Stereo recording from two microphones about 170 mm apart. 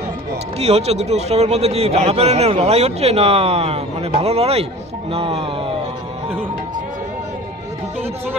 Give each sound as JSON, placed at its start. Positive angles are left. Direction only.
{"t": 0.6, "sound": "a man's voice", "side_deg": -40}